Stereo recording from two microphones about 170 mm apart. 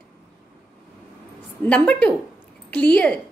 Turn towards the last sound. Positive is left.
turn(degrees=5)  # may be behind; listen again after turning